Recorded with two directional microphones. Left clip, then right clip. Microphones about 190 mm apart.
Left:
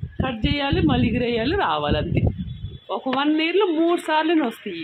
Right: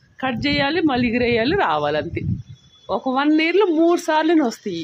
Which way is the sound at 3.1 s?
25° right (ahead or behind).